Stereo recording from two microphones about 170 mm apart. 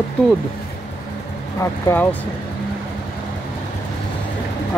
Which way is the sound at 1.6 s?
15° left (ahead or behind).